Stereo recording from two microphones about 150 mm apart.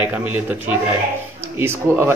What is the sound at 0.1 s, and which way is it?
A man's voice, 10° right (ahead or behind).